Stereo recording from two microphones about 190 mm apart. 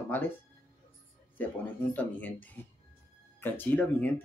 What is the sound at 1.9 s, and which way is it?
Speech, 10° left (ahead or behind).